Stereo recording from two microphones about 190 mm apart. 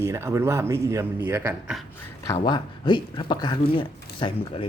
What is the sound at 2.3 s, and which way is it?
Speech, 25° left (ahead or behind).